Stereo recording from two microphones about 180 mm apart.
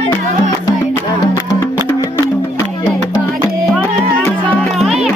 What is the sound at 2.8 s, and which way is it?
Music, 20° left (ahead or behind).